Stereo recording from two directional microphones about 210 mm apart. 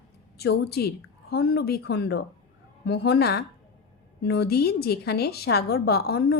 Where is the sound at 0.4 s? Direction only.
50° left (ahead or behind).